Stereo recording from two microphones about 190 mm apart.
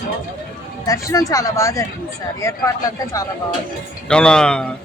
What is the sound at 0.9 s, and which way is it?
Speech, 15° left (ahead or behind).